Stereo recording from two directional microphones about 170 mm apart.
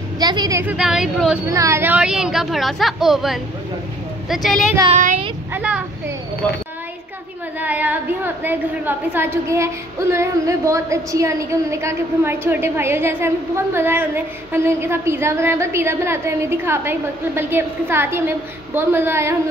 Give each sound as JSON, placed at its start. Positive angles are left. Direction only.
{"t": 0.2, "sound": "a woman's voice", "side_deg": -25}
{"t": 0.7, "sound": "a woman's voice", "side_deg": -5}
{"t": 1.5, "sound": "a woman's voice", "side_deg": -15}
{"t": 7.6, "sound": "a woman's voice", "side_deg": -10}